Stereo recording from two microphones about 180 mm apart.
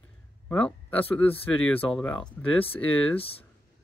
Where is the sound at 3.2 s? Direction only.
30° left (ahead or behind).